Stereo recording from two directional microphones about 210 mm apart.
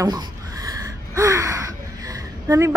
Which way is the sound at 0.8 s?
15° right (ahead or behind).